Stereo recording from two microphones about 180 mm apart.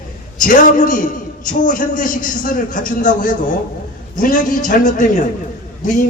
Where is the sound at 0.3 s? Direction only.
50° left (ahead or behind).